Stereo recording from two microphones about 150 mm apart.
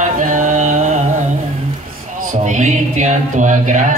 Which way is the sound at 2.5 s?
55° right (ahead or behind).